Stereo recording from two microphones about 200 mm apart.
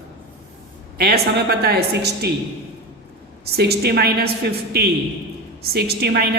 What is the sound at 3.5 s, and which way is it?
A woman's voice, 50° right (ahead or behind).